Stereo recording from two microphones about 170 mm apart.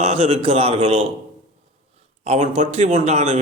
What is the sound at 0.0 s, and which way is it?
A man's voice, 35° right (ahead or behind).